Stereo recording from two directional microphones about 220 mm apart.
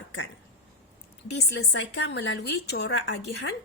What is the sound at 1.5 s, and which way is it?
Speech, 50° left (ahead or behind).